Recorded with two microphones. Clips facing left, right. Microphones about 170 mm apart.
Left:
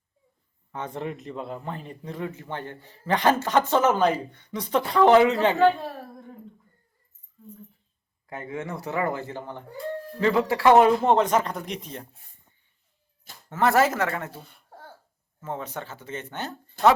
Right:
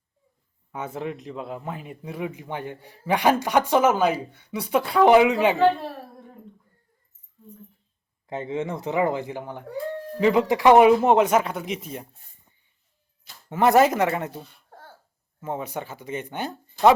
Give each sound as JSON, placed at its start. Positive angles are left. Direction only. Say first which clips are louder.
{"t": 0.7, "sound": "speech", "louder": "right 1 dB", "side_deg": -5}
{"t": 8.3, "sound": "speech", "louder": "right 5 dB", "side_deg": -25}
{"t": 13.5, "sound": "speech", "louder": "right 3 dB", "side_deg": -15}